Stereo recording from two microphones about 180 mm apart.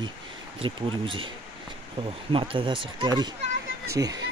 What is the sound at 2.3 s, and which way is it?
Speech, 30° right (ahead or behind).